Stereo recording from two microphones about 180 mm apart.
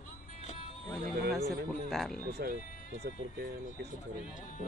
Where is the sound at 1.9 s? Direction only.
Centre (ahead or behind).